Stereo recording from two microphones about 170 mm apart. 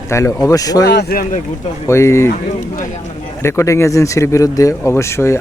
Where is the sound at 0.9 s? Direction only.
65° left (ahead or behind).